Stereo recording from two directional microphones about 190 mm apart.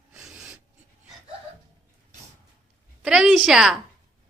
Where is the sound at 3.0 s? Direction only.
5° right (ahead or behind).